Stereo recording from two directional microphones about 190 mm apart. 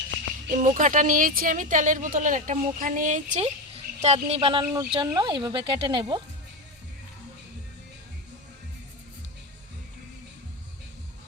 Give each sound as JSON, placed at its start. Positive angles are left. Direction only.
{"t": 0.5, "sound": "speech", "side_deg": -40}